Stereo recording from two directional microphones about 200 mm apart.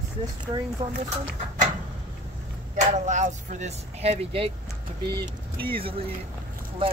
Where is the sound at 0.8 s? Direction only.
30° right (ahead or behind).